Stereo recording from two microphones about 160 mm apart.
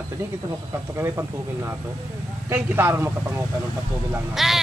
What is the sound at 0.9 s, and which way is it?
Speech, 15° right (ahead or behind).